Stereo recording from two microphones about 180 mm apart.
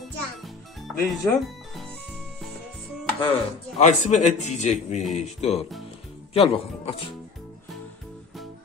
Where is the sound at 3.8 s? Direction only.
40° left (ahead or behind).